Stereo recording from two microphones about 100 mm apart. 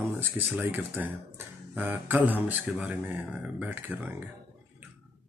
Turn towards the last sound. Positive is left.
turn(degrees=-20)  # may be behind; listen again after turning